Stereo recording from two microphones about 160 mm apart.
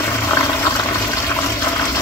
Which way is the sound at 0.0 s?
15° left (ahead or behind).